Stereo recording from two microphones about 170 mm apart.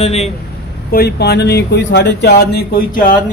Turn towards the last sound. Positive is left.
turn(degrees=55)  # may be behind; listen again after turning